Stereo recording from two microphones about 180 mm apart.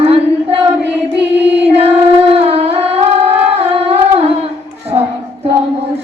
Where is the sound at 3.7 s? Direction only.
35° right (ahead or behind).